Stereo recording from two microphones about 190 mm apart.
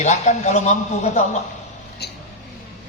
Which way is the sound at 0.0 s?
40° left (ahead or behind).